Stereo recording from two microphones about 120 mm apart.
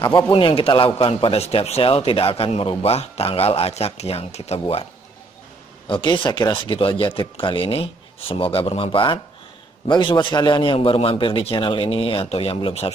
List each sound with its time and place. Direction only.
0.3 s a man's voice: 50° left (ahead or behind)
5.9 s a man's voice: 45° left (ahead or behind)